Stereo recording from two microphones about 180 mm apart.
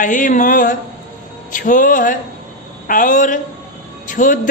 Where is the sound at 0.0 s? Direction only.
45° left (ahead or behind).